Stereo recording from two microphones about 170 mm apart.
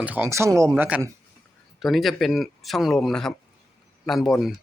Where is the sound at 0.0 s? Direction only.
10° right (ahead or behind).